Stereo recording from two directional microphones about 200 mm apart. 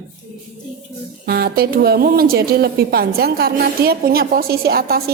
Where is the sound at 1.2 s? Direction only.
50° right (ahead or behind).